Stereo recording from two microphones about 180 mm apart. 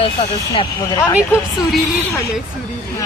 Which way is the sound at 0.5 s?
20° left (ahead or behind).